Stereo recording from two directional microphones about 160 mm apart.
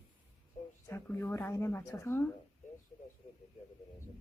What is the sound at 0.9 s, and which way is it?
Speech, 15° left (ahead or behind).